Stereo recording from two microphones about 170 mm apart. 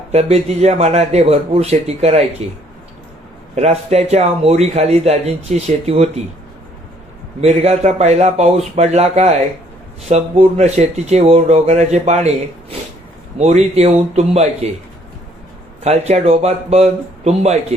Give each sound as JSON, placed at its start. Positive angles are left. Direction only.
{"t": 0.1, "sound": "a man's voice", "side_deg": -40}
{"t": 3.5, "sound": "a man's voice", "side_deg": -40}
{"t": 7.4, "sound": "a man's voice", "side_deg": -40}
{"t": 13.4, "sound": "a man's voice", "side_deg": -40}
{"t": 15.8, "sound": "a man's voice", "side_deg": -40}